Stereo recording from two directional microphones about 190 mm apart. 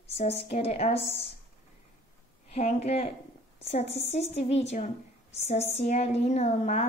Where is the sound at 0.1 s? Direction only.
30° left (ahead or behind).